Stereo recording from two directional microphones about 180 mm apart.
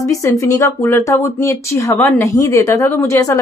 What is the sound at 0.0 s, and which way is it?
Speech, 15° left (ahead or behind).